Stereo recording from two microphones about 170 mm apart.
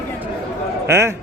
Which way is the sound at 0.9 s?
15° right (ahead or behind).